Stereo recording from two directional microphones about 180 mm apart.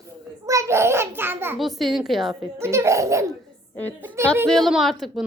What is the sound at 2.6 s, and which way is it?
Speech, 15° right (ahead or behind).